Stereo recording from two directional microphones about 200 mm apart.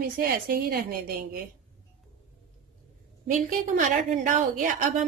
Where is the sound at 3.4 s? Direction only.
40° right (ahead or behind).